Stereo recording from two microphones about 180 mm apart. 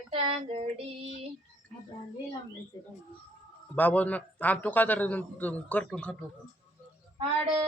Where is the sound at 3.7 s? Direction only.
10° left (ahead or behind).